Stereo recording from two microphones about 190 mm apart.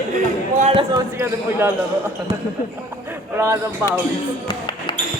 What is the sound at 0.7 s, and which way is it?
Basketball bounce, 20° right (ahead or behind).